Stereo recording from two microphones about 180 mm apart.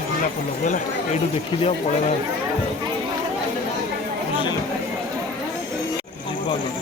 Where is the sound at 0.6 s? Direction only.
45° left (ahead or behind).